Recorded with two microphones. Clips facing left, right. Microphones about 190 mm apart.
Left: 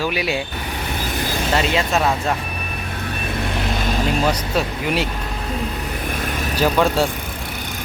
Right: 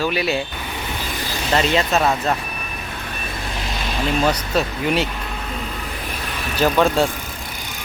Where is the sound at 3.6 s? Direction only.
50° left (ahead or behind).